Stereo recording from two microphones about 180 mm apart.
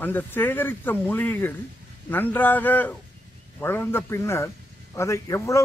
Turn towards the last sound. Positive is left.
turn(degrees=15)  # may be behind; listen again after turning